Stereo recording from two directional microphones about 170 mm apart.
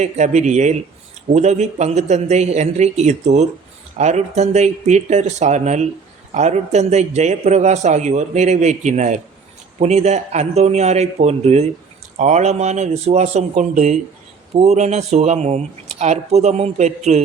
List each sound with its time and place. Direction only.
0.0 s a man's voice: 40° right (ahead or behind)